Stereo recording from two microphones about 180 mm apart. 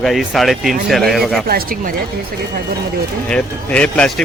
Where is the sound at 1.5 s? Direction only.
55° right (ahead or behind).